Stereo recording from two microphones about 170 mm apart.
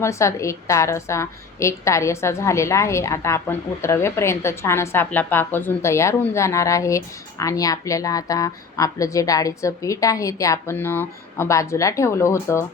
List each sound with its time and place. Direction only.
0.0 s a woman's voice: 15° left (ahead or behind)